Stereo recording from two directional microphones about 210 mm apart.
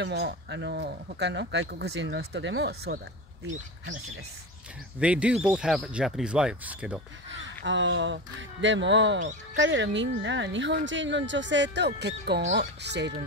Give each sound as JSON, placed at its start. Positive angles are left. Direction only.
{"t": 0.0, "sound": "speech", "side_deg": -50}
{"t": 4.9, "sound": "speech", "side_deg": -5}
{"t": 7.6, "sound": "speech", "side_deg": -60}